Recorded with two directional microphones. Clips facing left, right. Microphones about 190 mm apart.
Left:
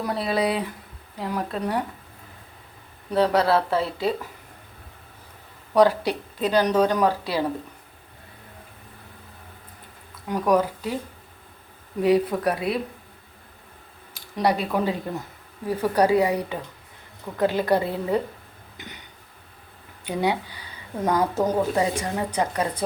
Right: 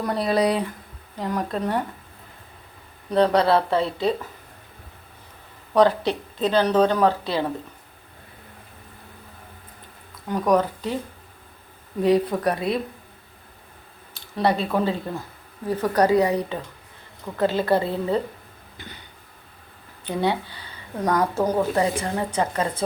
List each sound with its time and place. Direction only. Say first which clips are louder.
0.0 s speech: right 3 dB; centre (ahead or behind)
3.1 s speech: right 2 dB; 5° left (ahead or behind)
5.7 s speech: even; 10° left (ahead or behind)
10.2 s speech: right 1 dB; 10° left (ahead or behind)
12.0 s speech: even; 10° left (ahead or behind)
14.1 s speech: right 1 dB; 10° left (ahead or behind)
18.8 s a sound: even; 15° left (ahead or behind)
20.1 s speech: right 1 dB; 10° left (ahead or behind)